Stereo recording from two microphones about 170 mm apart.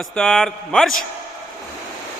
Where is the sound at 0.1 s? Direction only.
5° left (ahead or behind).